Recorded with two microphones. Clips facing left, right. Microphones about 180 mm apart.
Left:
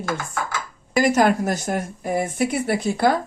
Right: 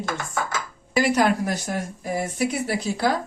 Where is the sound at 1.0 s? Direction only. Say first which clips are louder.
Left 3 dB; 45° left (ahead or behind).